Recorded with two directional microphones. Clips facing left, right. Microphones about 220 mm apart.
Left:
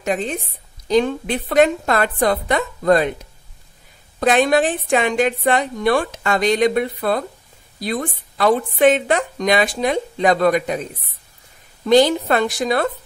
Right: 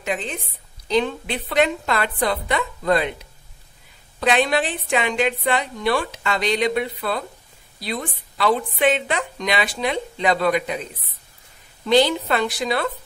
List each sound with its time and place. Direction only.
0.0 s a woman's voice: 45° left (ahead or behind)
4.2 s a woman's voice: 45° left (ahead or behind)